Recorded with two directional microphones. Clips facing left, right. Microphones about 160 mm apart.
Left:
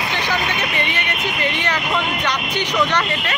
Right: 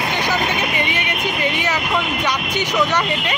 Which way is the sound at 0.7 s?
15° right (ahead or behind).